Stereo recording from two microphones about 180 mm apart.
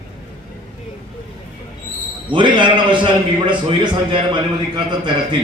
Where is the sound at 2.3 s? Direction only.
25° right (ahead or behind).